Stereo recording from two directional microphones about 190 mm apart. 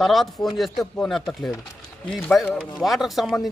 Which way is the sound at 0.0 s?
Centre (ahead or behind).